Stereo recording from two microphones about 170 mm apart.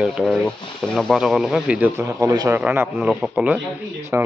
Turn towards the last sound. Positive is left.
turn(degrees=-10)  # may be behind; listen again after turning